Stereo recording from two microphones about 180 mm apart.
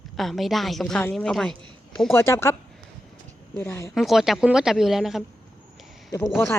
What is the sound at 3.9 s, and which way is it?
Speech, centre (ahead or behind).